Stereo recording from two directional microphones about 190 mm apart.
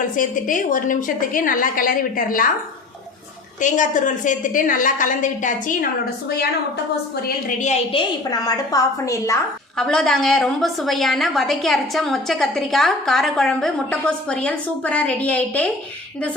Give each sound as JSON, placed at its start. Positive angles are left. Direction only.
{"t": 0.2, "sound": "a woman's voice", "side_deg": 45}
{"t": 3.6, "sound": "a woman's voice", "side_deg": 40}
{"t": 7.3, "sound": "a woman's voice", "side_deg": 40}
{"t": 8.3, "sound": "a woman's voice", "side_deg": 20}
{"t": 9.7, "sound": "a woman's voice", "side_deg": 5}